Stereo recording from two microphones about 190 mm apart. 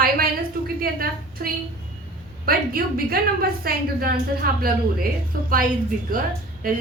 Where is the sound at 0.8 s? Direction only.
50° right (ahead or behind).